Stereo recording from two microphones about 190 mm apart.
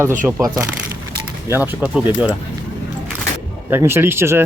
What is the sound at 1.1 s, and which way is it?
Speech, 10° right (ahead or behind).